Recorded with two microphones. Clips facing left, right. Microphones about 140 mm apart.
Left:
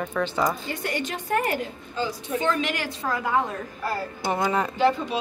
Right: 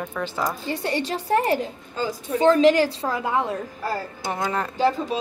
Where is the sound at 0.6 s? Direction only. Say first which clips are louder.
Right 4 dB; 30° right (ahead or behind).